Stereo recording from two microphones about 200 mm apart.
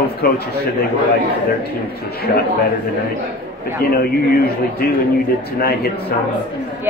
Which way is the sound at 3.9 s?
50° left (ahead or behind).